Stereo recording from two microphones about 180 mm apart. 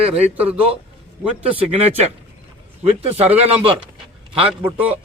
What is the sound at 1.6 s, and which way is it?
A man's voice, 35° right (ahead or behind).